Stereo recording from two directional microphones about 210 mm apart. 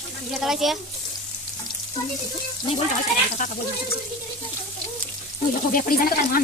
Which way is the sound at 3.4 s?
40° left (ahead or behind).